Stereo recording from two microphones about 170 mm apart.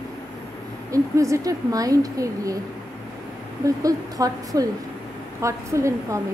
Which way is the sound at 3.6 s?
20° right (ahead or behind).